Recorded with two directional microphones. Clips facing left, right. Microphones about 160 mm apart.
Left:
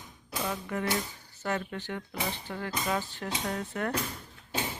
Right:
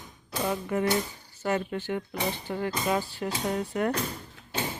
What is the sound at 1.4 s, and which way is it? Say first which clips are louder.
Speech: right 4 dB; 20° right (ahead or behind).